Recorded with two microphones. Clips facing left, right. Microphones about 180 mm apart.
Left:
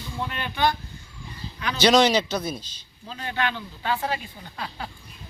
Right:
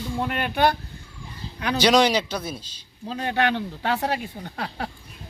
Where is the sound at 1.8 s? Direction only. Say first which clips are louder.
Left 1 dB; 10° right (ahead or behind).